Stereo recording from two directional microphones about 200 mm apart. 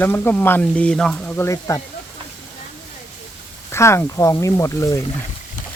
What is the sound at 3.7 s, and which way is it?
Speech, 15° left (ahead or behind).